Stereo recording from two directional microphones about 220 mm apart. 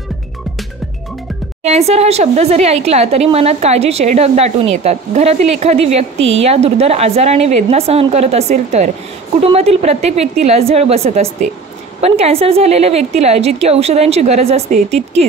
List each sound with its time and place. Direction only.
1.6 s speech: 30° right (ahead or behind)